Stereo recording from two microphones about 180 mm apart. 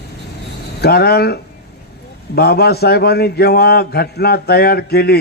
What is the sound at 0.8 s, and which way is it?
A man's voice, 60° left (ahead or behind).